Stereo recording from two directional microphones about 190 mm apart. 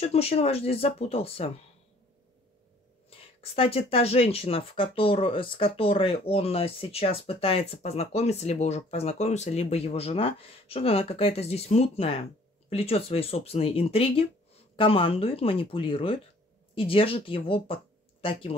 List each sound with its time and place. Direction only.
0.0 s speech: 30° left (ahead or behind)
3.3 s speech: 30° left (ahead or behind)